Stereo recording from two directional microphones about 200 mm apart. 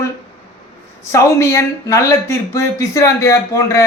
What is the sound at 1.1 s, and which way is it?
Speech, 15° left (ahead or behind).